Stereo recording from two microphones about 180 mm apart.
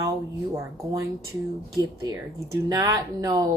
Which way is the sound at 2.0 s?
20° right (ahead or behind).